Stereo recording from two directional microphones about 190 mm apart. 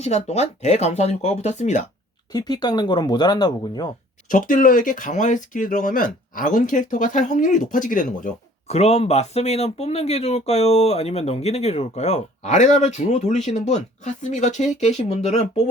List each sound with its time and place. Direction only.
0.0 s speech: 35° left (ahead or behind)
2.3 s speech: 20° left (ahead or behind)
4.3 s speech: 45° left (ahead or behind)